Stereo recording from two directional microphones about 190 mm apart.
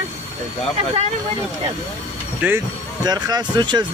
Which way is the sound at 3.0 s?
20° right (ahead or behind).